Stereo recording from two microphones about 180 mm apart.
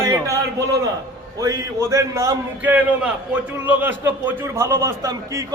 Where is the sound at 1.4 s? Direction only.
20° right (ahead or behind).